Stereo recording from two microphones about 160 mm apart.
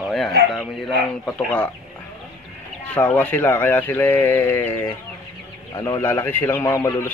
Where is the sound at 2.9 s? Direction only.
10° left (ahead or behind).